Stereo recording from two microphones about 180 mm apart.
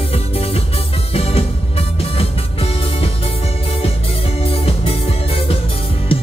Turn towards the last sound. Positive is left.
turn(degrees=30)  # may be behind; listen again after turning